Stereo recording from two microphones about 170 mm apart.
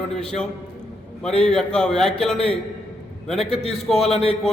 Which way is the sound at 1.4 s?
5° left (ahead or behind).